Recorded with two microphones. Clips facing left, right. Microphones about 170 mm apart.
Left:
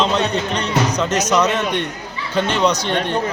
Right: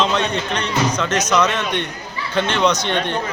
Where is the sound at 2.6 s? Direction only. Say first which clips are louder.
Right 1 dB; 35° left (ahead or behind).